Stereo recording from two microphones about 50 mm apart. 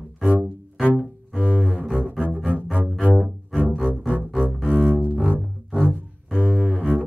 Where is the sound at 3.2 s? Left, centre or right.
Centre.